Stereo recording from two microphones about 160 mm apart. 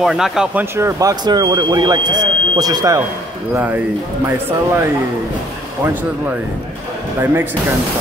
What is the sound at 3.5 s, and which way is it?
Speech, 10° right (ahead or behind).